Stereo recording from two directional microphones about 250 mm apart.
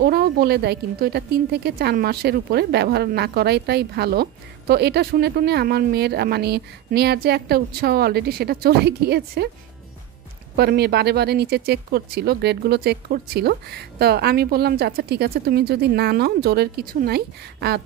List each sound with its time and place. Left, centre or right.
0.0 s a woman's voice: right
10.5 s a woman's voice: right